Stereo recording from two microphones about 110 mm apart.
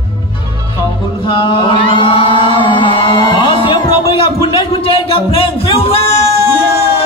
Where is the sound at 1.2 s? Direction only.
50° left (ahead or behind).